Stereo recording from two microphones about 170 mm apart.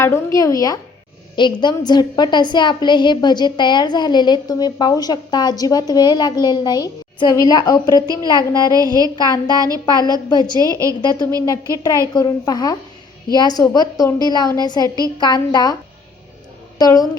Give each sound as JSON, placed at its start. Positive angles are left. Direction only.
{"t": 0.0, "sound": "a woman's voice", "side_deg": 15}
{"t": 8.0, "sound": "a woman's voice", "side_deg": -20}
{"t": 8.4, "sound": "a woman's voice", "side_deg": 25}
{"t": 8.7, "sound": "a woman's voice", "side_deg": -20}
{"t": 10.2, "sound": "a woman's voice", "side_deg": 25}
{"t": 10.6, "sound": "a woman's voice", "side_deg": -20}
{"t": 11.4, "sound": "a woman's voice", "side_deg": 20}
{"t": 16.7, "sound": "a woman's voice", "side_deg": 25}